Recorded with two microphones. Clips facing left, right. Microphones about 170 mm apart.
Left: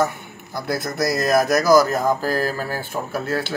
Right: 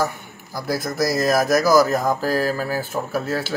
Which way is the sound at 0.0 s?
Centre (ahead or behind).